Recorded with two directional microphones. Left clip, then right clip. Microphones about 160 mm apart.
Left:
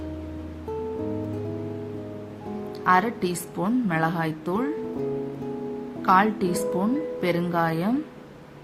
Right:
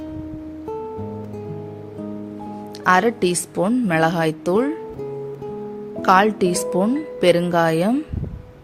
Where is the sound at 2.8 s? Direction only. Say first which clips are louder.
Right 5 dB; 50° right (ahead or behind).